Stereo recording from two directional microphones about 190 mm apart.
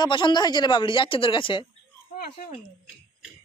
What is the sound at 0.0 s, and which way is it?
Speech, 25° left (ahead or behind).